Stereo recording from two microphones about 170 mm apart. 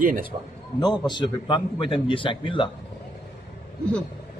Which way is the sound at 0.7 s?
25° left (ahead or behind).